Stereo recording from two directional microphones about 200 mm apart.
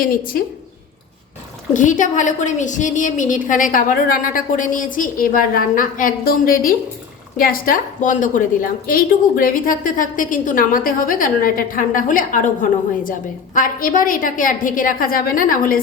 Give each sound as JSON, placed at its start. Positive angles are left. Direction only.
{"t": 0.0, "sound": "a woman's voice", "side_deg": 45}
{"t": 1.7, "sound": "a woman's voice", "side_deg": 40}